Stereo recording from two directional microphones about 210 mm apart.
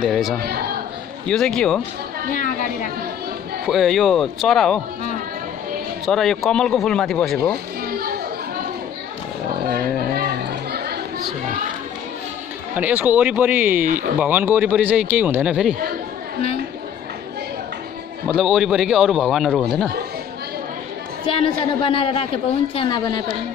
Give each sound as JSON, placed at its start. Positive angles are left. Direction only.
{"t": 0.0, "sound": "a man's voice", "side_deg": 0}
{"t": 0.4, "sound": "a man's voice", "side_deg": -45}
{"t": 1.2, "sound": "a man's voice", "side_deg": 5}
{"t": 2.3, "sound": "a woman's voice", "side_deg": 40}
{"t": 3.6, "sound": "a man's voice", "side_deg": 0}
{"t": 6.0, "sound": "a man's voice", "side_deg": 0}
{"t": 7.8, "sound": "children playing", "side_deg": -45}
{"t": 10.1, "sound": "chatter", "side_deg": -50}
{"t": 12.7, "sound": "speech", "side_deg": -5}
{"t": 18.3, "sound": "a man's voice", "side_deg": 0}
{"t": 21.3, "sound": "a woman's voice", "side_deg": 25}